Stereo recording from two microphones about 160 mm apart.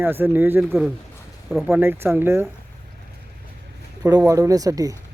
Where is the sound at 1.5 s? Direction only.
Centre (ahead or behind).